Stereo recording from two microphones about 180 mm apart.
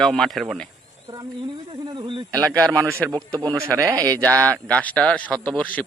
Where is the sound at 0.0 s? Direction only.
Centre (ahead or behind).